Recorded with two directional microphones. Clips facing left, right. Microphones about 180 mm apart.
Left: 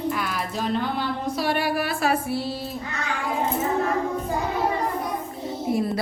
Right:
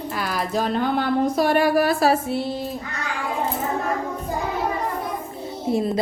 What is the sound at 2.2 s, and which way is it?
Music, 20° right (ahead or behind).